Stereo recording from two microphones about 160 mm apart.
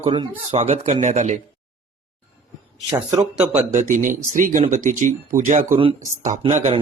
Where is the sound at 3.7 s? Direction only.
55° right (ahead or behind).